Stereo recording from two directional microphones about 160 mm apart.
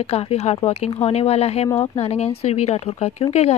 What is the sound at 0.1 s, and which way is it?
Speech, 40° left (ahead or behind).